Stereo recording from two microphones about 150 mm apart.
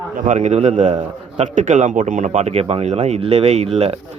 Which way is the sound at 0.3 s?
50° right (ahead or behind).